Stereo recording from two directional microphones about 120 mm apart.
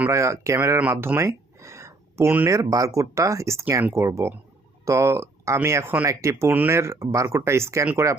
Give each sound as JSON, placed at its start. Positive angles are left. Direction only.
{"t": 0.1, "sound": "speech", "side_deg": -25}
{"t": 0.8, "sound": "a sound", "side_deg": -20}
{"t": 2.6, "sound": "speech", "side_deg": -30}